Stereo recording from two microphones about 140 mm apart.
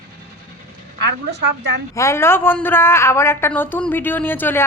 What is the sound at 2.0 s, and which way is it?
A woman's voice, 20° left (ahead or behind).